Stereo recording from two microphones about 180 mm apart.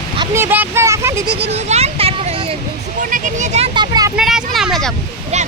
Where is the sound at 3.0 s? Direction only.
45° right (ahead or behind).